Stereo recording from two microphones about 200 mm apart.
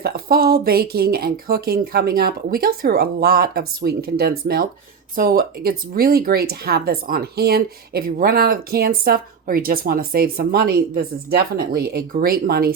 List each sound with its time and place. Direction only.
0.0 s speech: 50° right (ahead or behind)